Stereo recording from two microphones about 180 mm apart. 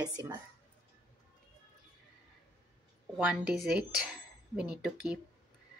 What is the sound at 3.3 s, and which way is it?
Speech, 5° right (ahead or behind).